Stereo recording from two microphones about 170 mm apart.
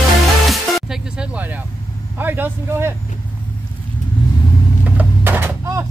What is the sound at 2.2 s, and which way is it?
Speech, 10° right (ahead or behind).